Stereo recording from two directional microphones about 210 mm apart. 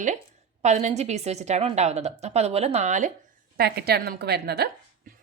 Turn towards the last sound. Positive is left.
turn(degrees=-50)  # may be behind; listen again after turning